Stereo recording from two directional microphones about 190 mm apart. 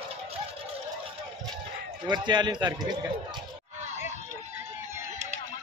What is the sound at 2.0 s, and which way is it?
A man's voice, 25° right (ahead or behind).